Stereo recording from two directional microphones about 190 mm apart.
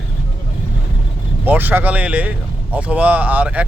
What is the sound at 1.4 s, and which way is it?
Speech, 10° right (ahead or behind).